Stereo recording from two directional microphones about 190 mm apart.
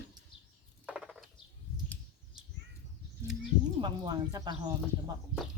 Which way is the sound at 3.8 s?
20° right (ahead or behind).